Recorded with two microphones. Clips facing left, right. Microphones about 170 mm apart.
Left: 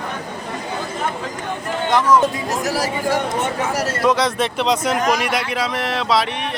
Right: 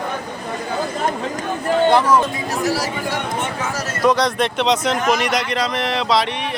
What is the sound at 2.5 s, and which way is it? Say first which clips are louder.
Speech: even; 45° left (ahead or behind).